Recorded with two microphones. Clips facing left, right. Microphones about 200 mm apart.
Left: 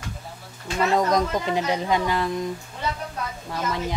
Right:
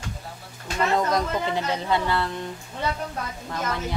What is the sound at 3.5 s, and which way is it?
Speech, 15° left (ahead or behind).